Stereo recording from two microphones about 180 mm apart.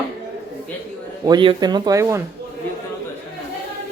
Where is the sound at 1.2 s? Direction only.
25° right (ahead or behind).